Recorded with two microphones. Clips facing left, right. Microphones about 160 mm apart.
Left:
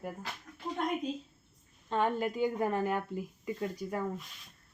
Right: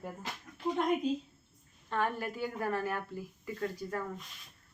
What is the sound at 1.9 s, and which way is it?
Speech, 20° left (ahead or behind).